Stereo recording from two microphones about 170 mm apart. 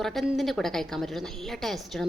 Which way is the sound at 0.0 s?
Centre (ahead or behind).